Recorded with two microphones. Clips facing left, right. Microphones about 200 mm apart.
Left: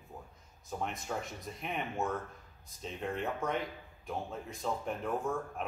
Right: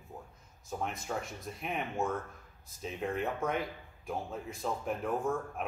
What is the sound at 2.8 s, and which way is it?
Speech, 5° right (ahead or behind).